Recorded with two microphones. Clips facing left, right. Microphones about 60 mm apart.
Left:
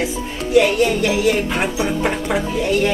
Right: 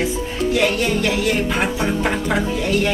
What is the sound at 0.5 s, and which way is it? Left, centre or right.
Music, centre.